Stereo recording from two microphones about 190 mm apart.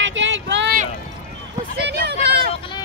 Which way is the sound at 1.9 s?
60° right (ahead or behind).